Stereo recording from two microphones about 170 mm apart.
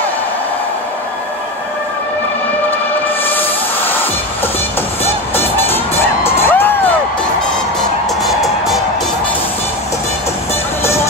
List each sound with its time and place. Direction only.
3.3 s a sound: 10° left (ahead or behind)
5.0 s music: 15° left (ahead or behind)
8.2 s music: centre (ahead or behind)
10.8 s music: 15° left (ahead or behind)